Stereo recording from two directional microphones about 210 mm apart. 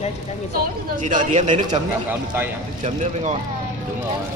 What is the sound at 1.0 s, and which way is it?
Speech, 35° right (ahead or behind).